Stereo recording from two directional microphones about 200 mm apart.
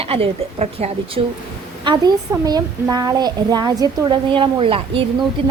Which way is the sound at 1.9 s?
20° right (ahead or behind).